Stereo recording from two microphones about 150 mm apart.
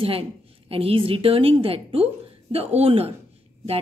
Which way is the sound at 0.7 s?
40° right (ahead or behind).